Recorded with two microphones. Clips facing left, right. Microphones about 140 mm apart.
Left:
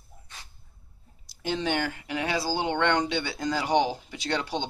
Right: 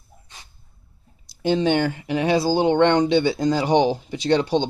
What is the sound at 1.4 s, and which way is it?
Speech, 25° right (ahead or behind).